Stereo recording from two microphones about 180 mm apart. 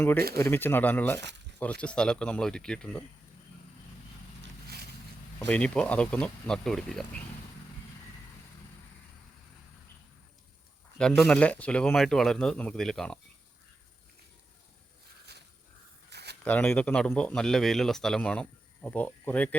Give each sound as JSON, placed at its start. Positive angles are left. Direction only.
{"t": 0.3, "sound": "a man's voice", "side_deg": 15}
{"t": 5.5, "sound": "speech", "side_deg": 5}
{"t": 10.9, "sound": "speech", "side_deg": 5}
{"t": 16.0, "sound": "a sound", "side_deg": -65}
{"t": 16.4, "sound": "a man's voice", "side_deg": 10}